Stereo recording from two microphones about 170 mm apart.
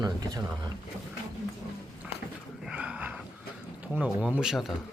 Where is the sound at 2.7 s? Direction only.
5° right (ahead or behind).